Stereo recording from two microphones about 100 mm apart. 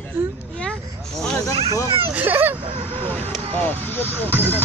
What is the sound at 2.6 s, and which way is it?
Speech, 65° right (ahead or behind).